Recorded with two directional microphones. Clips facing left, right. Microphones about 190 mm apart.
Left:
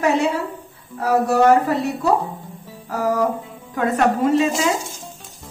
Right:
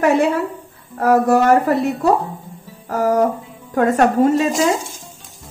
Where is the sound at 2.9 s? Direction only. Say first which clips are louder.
Right 4 dB; 45° right (ahead or behind).